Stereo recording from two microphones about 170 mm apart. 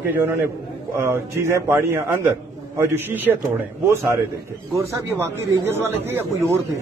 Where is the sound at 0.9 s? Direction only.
15° right (ahead or behind).